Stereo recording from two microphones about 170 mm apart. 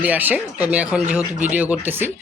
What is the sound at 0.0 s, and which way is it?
A man's voice, 10° right (ahead or behind).